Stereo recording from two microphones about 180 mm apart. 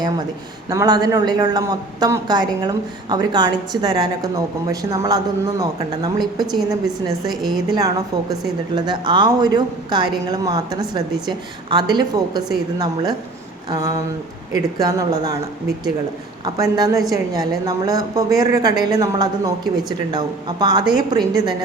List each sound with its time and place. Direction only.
0.7 s a woman's voice: 20° right (ahead or behind)
16.6 s a woman's voice: 20° right (ahead or behind)